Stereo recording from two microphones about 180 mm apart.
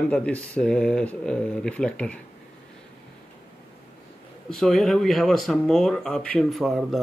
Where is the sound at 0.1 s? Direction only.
5° left (ahead or behind).